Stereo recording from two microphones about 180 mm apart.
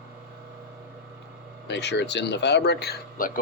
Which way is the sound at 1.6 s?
70° left (ahead or behind).